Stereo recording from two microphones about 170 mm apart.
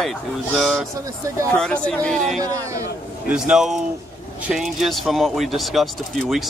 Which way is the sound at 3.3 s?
5° right (ahead or behind).